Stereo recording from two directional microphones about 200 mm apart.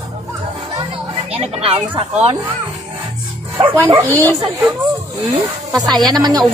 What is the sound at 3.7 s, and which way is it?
Speech, 15° right (ahead or behind).